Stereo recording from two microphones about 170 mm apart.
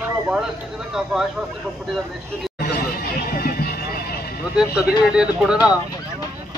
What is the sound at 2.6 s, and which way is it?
Music, 70° left (ahead or behind).